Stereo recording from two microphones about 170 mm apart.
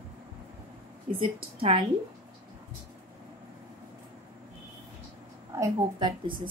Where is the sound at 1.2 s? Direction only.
35° right (ahead or behind).